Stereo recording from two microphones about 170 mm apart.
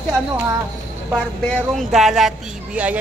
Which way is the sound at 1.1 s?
5° left (ahead or behind).